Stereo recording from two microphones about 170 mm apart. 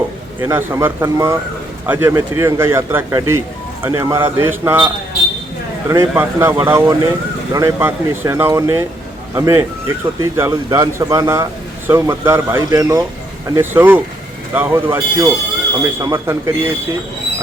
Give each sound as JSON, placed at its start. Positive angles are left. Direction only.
{"t": 0.3, "sound": "speech", "side_deg": -15}
{"t": 5.9, "sound": "speech", "side_deg": -15}